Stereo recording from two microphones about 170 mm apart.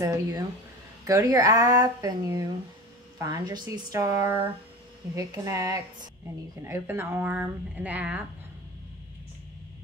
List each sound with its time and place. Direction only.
0.0 s speech: 20° right (ahead or behind)